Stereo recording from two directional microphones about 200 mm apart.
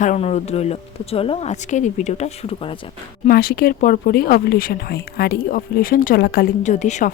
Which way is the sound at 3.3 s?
50° left (ahead or behind).